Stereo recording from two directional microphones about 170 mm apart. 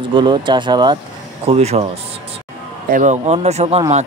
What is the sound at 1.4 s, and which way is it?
Speech, 40° right (ahead or behind).